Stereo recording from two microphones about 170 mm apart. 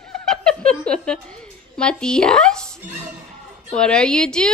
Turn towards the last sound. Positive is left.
turn(degrees=5)  # may be behind; listen again after turning